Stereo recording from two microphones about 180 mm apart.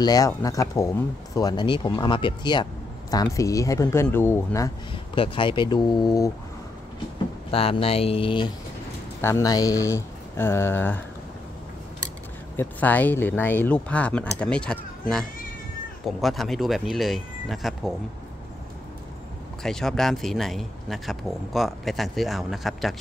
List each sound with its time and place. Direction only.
0.0 s speech: 20° left (ahead or behind)
4.9 s speech: 30° left (ahead or behind)
7.5 s speech: 30° left (ahead or behind)
9.2 s speech: 15° left (ahead or behind)
12.5 s speech: 10° left (ahead or behind)
19.6 s speech: centre (ahead or behind)